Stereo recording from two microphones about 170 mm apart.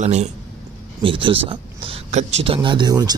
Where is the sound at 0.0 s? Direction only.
40° right (ahead or behind).